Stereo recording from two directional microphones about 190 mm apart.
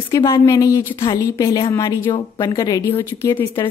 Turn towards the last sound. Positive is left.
turn(degrees=15)  # may be behind; listen again after turning